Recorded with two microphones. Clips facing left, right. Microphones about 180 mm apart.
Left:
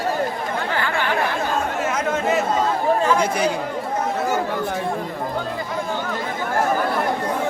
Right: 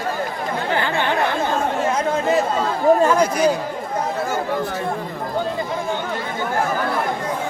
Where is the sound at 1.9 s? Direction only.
35° right (ahead or behind).